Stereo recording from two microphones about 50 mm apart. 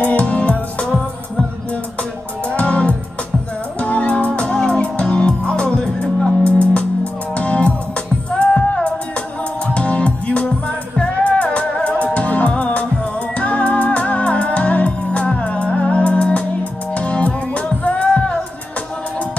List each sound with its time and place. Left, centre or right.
0.0 s music: left
2.4 s music: left